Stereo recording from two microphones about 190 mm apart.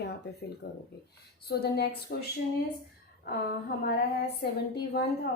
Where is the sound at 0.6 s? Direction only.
65° left (ahead or behind).